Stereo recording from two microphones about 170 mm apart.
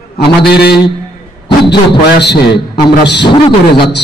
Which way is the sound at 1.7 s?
80° left.